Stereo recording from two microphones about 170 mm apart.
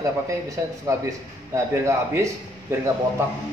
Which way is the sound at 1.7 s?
15° right (ahead or behind).